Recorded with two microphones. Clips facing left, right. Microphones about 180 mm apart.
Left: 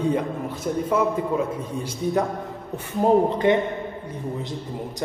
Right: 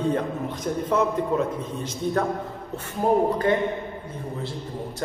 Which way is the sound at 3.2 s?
20° left (ahead or behind).